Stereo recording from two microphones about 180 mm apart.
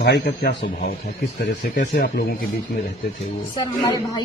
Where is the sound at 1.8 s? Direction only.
60° left (ahead or behind).